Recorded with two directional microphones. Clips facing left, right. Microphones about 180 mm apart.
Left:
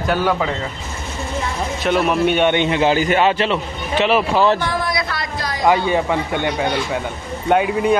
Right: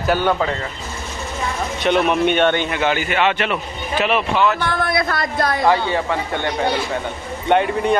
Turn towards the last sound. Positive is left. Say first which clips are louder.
# left 1 dB
turn(degrees=5)  # may be behind; listen again after turning